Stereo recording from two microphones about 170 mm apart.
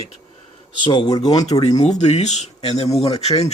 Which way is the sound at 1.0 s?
20° left (ahead or behind).